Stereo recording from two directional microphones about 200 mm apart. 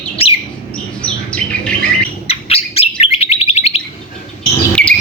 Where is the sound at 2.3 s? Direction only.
30° left (ahead or behind).